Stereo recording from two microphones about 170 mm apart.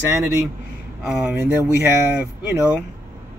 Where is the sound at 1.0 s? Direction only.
Centre (ahead or behind).